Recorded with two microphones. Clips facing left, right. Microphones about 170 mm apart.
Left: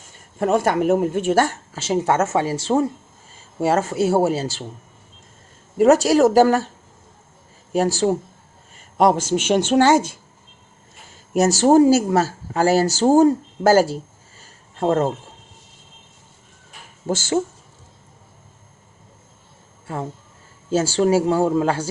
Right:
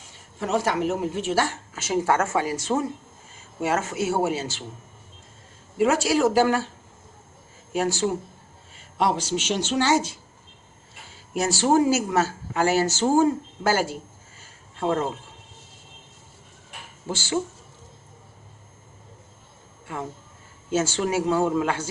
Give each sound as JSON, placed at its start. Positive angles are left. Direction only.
{"t": 0.0, "sound": "speech", "side_deg": 50}
{"t": 1.7, "sound": "speech", "side_deg": 30}
{"t": 5.7, "sound": "speech", "side_deg": 40}
{"t": 7.7, "sound": "a man's voice", "side_deg": 35}
{"t": 11.3, "sound": "speech", "side_deg": 40}
{"t": 17.1, "sound": "a man's voice", "side_deg": 45}
{"t": 19.9, "sound": "speech", "side_deg": 35}